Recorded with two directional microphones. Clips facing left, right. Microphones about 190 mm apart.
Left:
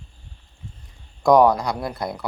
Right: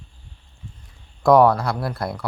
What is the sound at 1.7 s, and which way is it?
Mantra, 20° left (ahead or behind).